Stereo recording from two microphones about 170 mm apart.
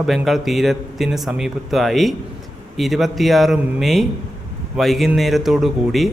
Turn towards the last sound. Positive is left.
turn(degrees=0)  # may be behind; listen again after turning